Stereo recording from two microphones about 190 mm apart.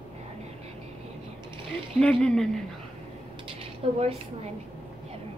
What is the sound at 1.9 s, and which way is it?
Speech, 5° left (ahead or behind).